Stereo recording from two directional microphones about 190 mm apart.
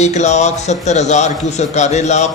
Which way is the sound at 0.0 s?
35° left (ahead or behind).